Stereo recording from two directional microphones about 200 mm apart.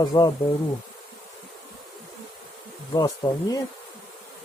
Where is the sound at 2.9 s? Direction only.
20° left (ahead or behind).